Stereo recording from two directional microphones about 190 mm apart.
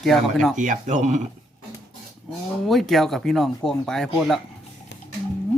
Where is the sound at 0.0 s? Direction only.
Centre (ahead or behind).